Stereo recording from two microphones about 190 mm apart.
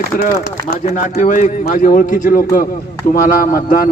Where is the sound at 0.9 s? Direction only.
35° left (ahead or behind).